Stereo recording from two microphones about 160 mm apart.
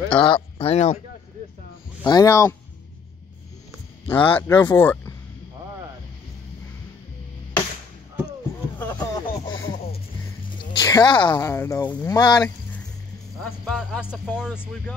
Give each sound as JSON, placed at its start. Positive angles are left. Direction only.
{"t": 0.2, "sound": "speech", "side_deg": 35}
{"t": 2.0, "sound": "speech", "side_deg": 20}
{"t": 4.1, "sound": "speech", "side_deg": 10}
{"t": 8.7, "sound": "music", "side_deg": 15}
{"t": 10.7, "sound": "speech", "side_deg": 25}
{"t": 13.4, "sound": "speech", "side_deg": 0}
{"t": 14.5, "sound": "speech", "side_deg": 15}